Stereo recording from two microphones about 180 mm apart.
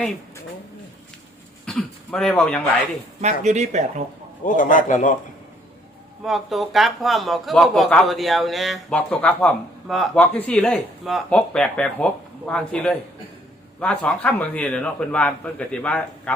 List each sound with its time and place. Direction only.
1.6 s speech: 5° left (ahead or behind)
3.4 s speech: 40° right (ahead or behind)
4.4 s a man's voice: 45° left (ahead or behind)
6.2 s a man's voice: centre (ahead or behind)